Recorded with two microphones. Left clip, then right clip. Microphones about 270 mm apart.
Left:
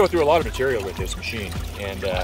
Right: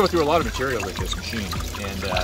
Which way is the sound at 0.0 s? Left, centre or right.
Left.